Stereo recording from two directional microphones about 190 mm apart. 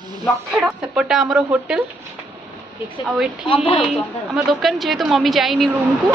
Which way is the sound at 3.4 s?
30° left (ahead or behind).